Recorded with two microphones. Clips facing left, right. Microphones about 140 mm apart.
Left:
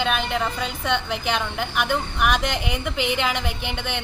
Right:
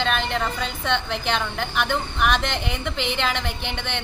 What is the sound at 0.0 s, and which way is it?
A woman's voice, 5° left (ahead or behind).